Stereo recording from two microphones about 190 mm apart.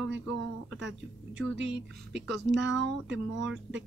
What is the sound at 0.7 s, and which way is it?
Speech, 75° right (ahead or behind).